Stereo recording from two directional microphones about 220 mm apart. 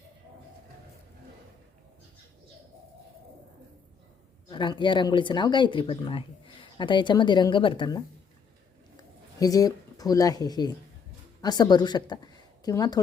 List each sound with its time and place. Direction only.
4.4 s a woman's voice: 20° left (ahead or behind)